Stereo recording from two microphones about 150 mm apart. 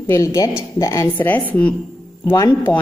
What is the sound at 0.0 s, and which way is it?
A woman's voice, 20° left (ahead or behind).